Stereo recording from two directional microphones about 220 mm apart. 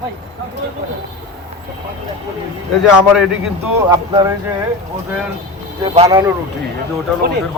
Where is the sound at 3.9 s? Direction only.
15° right (ahead or behind).